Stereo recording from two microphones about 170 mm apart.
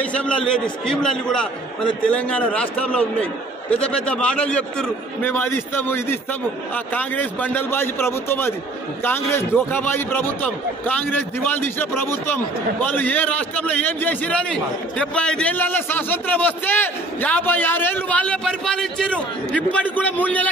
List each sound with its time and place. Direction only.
0.0 s a man's voice: 5° left (ahead or behind)